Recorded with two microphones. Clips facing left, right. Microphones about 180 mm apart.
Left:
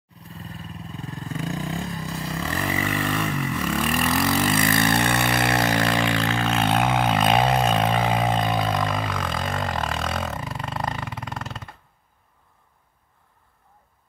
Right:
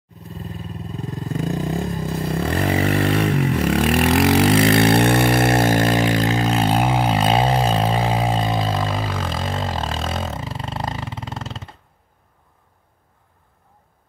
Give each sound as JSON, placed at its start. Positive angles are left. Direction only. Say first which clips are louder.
{"t": 1.3, "sound": "vehicle", "louder": "right 6 dB", "side_deg": -40}